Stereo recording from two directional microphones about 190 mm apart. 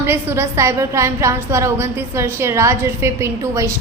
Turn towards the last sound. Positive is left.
turn(degrees=-15)  # may be behind; listen again after turning